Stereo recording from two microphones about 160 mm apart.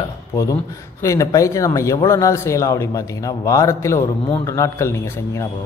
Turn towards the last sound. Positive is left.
turn(degrees=15)  # may be behind; listen again after turning